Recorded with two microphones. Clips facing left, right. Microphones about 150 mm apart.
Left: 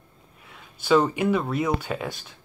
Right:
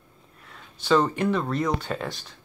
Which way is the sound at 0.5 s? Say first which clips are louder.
Left 1 dB; 5° left (ahead or behind).